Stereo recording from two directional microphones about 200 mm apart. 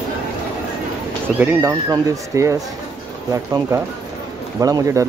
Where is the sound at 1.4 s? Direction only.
10° right (ahead or behind).